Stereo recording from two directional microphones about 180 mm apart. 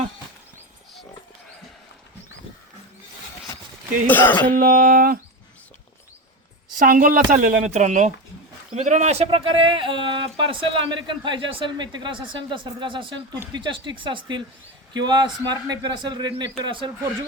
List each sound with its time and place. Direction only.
4.0 s speech: 10° left (ahead or behind)
4.5 s a woman's voice: 50° right (ahead or behind)
6.7 s a woman's voice: 50° right (ahead or behind); by 16.9 s 25° right (ahead or behind)